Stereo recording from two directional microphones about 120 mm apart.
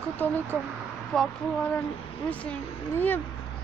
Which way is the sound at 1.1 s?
5° left (ahead or behind).